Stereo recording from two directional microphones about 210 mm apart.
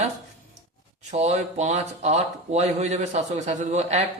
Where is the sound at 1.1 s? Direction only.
30° right (ahead or behind).